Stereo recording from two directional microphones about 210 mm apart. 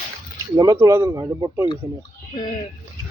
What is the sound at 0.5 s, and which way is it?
Speech, 15° right (ahead or behind).